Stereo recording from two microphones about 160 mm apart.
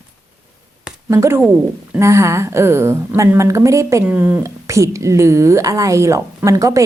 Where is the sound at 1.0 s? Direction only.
20° right (ahead or behind).